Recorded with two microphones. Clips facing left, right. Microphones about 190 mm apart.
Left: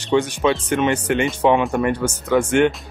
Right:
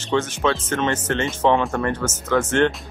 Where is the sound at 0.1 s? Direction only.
15° left (ahead or behind).